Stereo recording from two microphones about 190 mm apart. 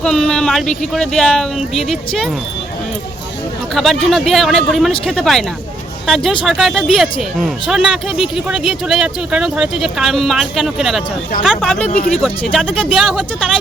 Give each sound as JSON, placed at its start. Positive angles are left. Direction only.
{"t": 0.0, "sound": "speech", "side_deg": 5}
{"t": 3.8, "sound": "speech", "side_deg": 0}
{"t": 11.9, "sound": "speech", "side_deg": 35}
{"t": 12.2, "sound": "speech", "side_deg": 0}